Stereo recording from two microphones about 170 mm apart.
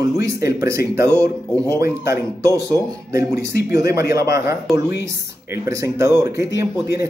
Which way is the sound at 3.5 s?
70° left (ahead or behind).